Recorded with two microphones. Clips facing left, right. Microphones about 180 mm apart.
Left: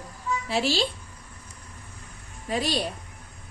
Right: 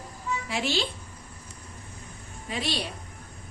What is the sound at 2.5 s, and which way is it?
Speech, 40° left (ahead or behind).